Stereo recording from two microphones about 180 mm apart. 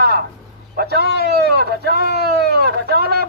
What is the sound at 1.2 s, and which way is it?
Speech, 60° right (ahead or behind).